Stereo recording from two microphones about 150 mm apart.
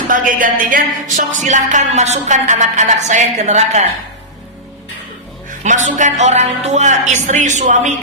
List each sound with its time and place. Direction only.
0.1 s a woman's voice: 65° right (ahead or behind)
5.5 s a woman's voice: 55° right (ahead or behind)